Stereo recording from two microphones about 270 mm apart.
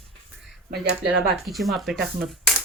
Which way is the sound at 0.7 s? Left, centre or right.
Right.